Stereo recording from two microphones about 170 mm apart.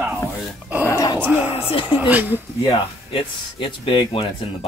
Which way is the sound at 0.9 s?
20° left (ahead or behind).